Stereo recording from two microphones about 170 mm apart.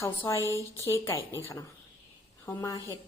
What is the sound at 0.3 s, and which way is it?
A woman's voice, 15° left (ahead or behind).